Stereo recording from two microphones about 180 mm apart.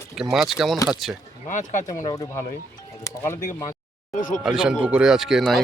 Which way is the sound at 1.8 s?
20° left (ahead or behind).